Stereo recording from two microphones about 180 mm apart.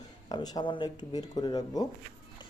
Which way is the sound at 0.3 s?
25° left (ahead or behind).